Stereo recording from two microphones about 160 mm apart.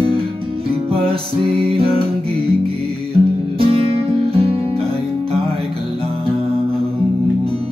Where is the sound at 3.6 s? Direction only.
35° right (ahead or behind).